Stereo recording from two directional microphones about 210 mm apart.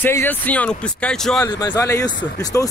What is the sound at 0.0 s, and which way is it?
Speech, 10° left (ahead or behind).